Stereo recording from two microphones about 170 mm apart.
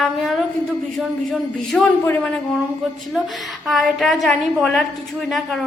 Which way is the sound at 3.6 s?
Centre (ahead or behind).